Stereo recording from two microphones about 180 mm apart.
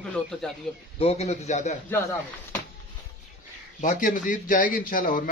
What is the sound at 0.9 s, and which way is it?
Speech, 35° left (ahead or behind).